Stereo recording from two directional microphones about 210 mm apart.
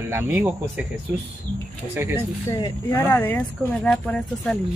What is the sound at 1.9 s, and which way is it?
Speech, 10° right (ahead or behind).